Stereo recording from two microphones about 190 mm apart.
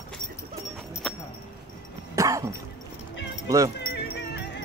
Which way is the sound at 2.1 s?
15° right (ahead or behind).